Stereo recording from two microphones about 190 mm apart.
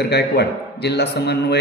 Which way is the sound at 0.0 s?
60° left (ahead or behind).